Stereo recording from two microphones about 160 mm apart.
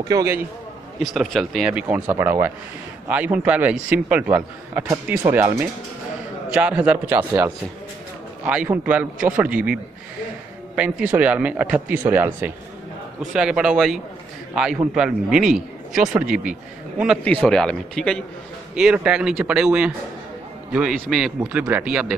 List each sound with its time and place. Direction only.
0.1 s a man's voice: 20° right (ahead or behind)
1.0 s a man's voice: centre (ahead or behind)
10.8 s a man's voice: 10° right (ahead or behind)
17.2 s speech: 5° left (ahead or behind)
21.1 s a man's voice: 5° right (ahead or behind)